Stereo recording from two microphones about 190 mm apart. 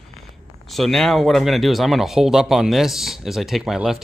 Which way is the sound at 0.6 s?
Centre (ahead or behind).